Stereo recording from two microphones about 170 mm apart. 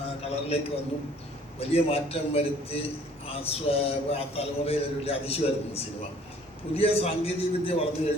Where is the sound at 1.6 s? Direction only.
35° left (ahead or behind).